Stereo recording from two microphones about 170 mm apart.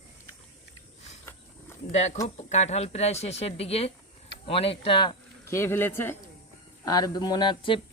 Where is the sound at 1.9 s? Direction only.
40° left (ahead or behind).